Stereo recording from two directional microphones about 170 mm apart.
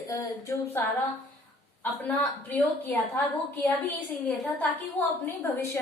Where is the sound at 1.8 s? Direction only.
10° left (ahead or behind).